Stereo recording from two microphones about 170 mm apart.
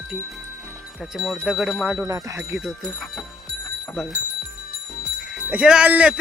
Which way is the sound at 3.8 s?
Centre (ahead or behind).